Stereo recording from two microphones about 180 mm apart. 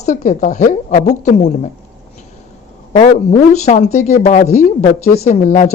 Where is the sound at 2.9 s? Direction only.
40° left (ahead or behind).